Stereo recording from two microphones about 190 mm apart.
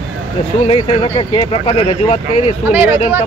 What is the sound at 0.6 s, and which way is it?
Speech, 30° left (ahead or behind).